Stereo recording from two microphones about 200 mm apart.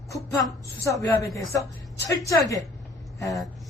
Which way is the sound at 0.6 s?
15° left (ahead or behind).